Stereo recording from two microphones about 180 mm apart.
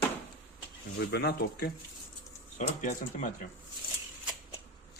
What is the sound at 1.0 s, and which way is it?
Speech, 65° left (ahead or behind).